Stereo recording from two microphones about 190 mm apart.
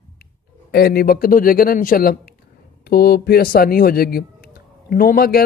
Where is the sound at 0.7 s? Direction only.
55° left (ahead or behind).